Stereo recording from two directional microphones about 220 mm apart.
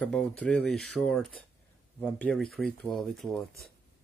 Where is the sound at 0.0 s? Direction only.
5° left (ahead or behind).